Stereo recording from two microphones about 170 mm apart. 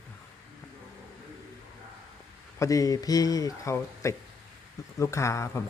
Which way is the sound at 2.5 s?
20° left (ahead or behind).